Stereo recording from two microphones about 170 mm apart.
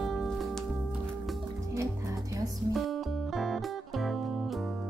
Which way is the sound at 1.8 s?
20° right (ahead or behind).